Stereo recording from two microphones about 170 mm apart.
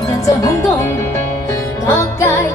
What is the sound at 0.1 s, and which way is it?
Music, 20° left (ahead or behind).